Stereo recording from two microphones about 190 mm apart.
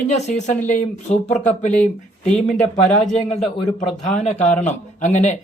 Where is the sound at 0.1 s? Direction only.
35° left (ahead or behind).